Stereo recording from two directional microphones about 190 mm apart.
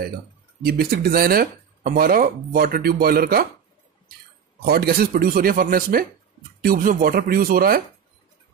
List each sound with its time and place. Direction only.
0.7 s speech: 55° right (ahead or behind)
4.6 s speech: 55° right (ahead or behind)